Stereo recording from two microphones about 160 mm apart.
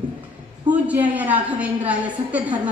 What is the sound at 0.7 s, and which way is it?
A woman's voice, 10° right (ahead or behind).